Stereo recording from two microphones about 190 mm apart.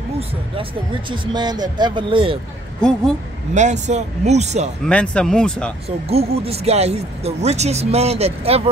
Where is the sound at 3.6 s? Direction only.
40° right (ahead or behind).